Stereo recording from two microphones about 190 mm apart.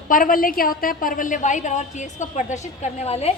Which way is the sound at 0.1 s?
45° left (ahead or behind).